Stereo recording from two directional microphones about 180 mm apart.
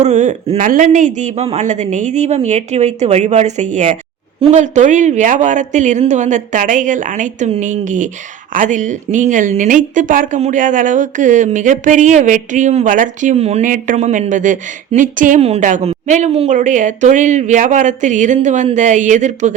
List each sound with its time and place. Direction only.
0.0 s speech: 40° right (ahead or behind)